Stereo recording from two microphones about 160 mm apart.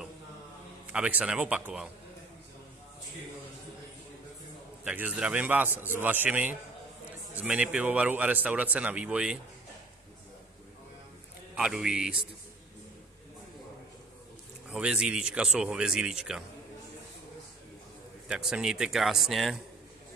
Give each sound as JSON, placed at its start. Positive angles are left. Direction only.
{"t": 0.8, "sound": "speech", "side_deg": -10}
{"t": 4.8, "sound": "a man's voice", "side_deg": -10}
{"t": 11.5, "sound": "speech", "side_deg": -5}
{"t": 14.7, "sound": "speech", "side_deg": -5}
{"t": 18.3, "sound": "speech", "side_deg": -5}